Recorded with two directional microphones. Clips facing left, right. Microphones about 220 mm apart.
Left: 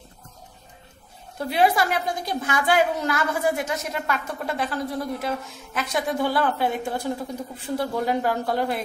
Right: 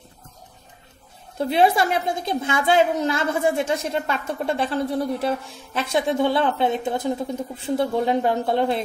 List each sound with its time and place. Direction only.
1.4 s a woman's voice: 25° right (ahead or behind)